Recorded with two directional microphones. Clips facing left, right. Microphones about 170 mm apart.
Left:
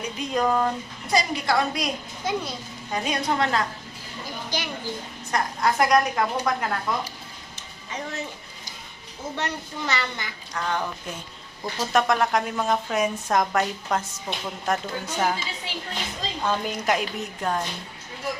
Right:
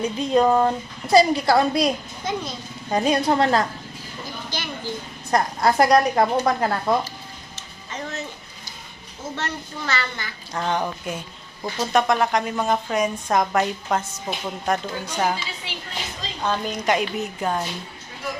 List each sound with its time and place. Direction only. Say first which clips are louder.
0.0 s a woman's voice: right 6 dB; 30° right (ahead or behind)
2.3 s a child's voice: even; 10° left (ahead or behind)
2.9 s a woman's voice: right 6 dB; 35° right (ahead or behind)
4.5 s a child's voice: left 2 dB; 15° left (ahead or behind)
5.3 s a woman's voice: right 4 dB; 35° right (ahead or behind)
7.5 s music: even; 10° left (ahead or behind)
9.3 s a child's voice: even; 15° left (ahead or behind)
10.5 s speech: right 4 dB; 20° right (ahead or behind)
11.8 s a woman's voice: right 2 dB; centre (ahead or behind)
16.5 s a woman's voice: right 2 dB; 5° left (ahead or behind)